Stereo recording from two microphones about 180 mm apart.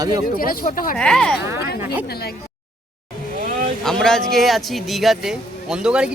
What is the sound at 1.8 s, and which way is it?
Speech, 15° right (ahead or behind).